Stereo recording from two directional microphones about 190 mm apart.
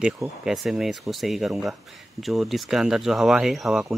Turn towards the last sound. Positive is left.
turn(degrees=0)  # may be behind; listen again after turning